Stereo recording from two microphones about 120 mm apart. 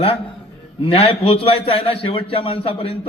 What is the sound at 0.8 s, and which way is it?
A man's voice, 50° left (ahead or behind).